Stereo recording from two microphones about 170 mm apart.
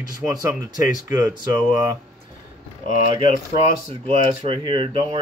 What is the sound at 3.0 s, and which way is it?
Speech, 35° right (ahead or behind).